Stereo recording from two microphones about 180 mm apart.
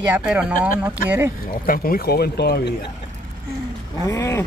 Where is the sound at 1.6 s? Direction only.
55° left (ahead or behind).